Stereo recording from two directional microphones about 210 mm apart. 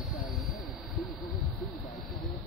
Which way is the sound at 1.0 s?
Centre (ahead or behind).